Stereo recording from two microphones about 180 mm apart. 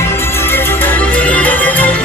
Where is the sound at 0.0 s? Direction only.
10° left (ahead or behind).